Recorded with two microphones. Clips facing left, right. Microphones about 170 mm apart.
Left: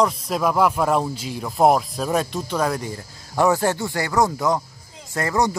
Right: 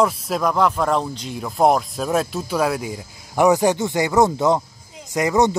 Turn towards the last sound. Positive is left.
turn(degrees=-20)  # may be behind; listen again after turning